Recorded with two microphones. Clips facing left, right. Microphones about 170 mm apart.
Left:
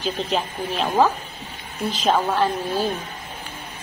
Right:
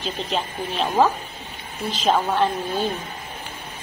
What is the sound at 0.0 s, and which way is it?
A woman's voice, centre (ahead or behind).